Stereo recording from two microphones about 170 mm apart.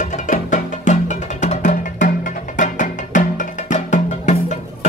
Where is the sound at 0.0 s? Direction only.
45° left (ahead or behind).